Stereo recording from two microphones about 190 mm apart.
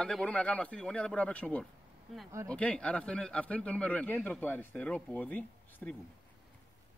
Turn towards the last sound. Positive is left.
turn(degrees=10)  # may be behind; listen again after turning